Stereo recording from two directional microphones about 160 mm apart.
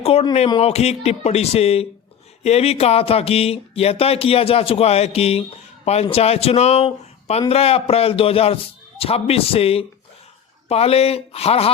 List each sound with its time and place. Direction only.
0.0 s speech: 40° left (ahead or behind)